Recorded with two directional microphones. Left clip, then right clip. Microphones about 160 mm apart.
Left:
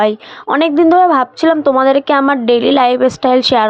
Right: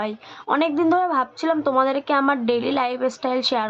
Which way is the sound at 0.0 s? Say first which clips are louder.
Left 14 dB; 45° left (ahead or behind).